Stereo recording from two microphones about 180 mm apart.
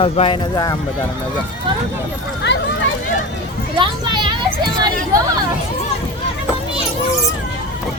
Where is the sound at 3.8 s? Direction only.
25° right (ahead or behind).